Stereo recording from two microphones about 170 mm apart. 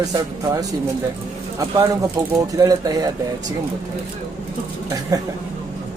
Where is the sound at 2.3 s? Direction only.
20° right (ahead or behind).